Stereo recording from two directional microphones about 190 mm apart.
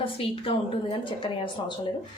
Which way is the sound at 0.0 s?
30° left (ahead or behind).